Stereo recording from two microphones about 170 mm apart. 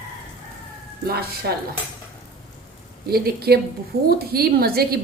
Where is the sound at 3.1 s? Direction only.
65° right (ahead or behind).